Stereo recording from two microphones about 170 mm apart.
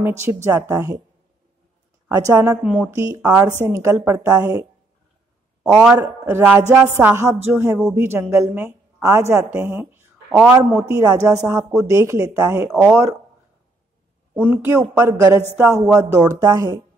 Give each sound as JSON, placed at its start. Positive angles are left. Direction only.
{"t": 0.0, "sound": "speech", "side_deg": -15}
{"t": 2.0, "sound": "speech", "side_deg": -20}
{"t": 5.9, "sound": "a woman's voice", "side_deg": -15}
{"t": 14.3, "sound": "speech", "side_deg": -10}